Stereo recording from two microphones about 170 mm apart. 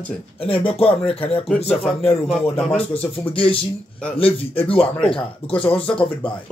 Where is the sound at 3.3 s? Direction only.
30° left (ahead or behind).